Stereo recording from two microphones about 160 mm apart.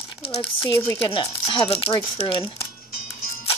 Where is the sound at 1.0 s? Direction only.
30° left (ahead or behind).